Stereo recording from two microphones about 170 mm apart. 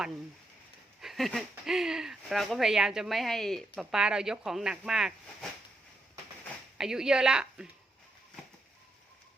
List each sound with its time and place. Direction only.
1.0 s speech: centre (ahead or behind)
6.7 s speech: 5° right (ahead or behind)